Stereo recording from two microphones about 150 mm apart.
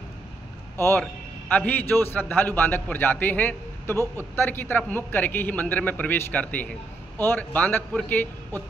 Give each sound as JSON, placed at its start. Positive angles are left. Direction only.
{"t": 0.7, "sound": "a man's voice", "side_deg": 15}